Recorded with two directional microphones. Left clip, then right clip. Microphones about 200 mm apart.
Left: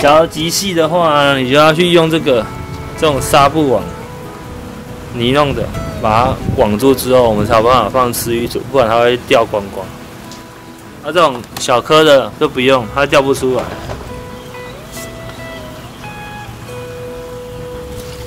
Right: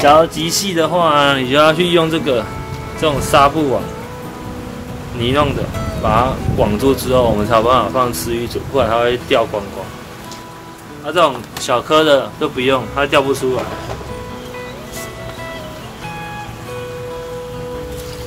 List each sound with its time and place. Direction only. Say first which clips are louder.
0.0 s speech: left 1 dB; 10° left (ahead or behind)
1.5 s speech: left 5 dB; 35° left (ahead or behind)
5.2 s speech: left 3 dB; 40° left (ahead or behind)
11.1 s speech: left 2 dB; 35° left (ahead or behind)